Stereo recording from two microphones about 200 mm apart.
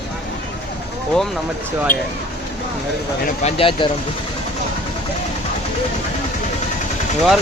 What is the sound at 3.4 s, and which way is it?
Speech, 25° left (ahead or behind).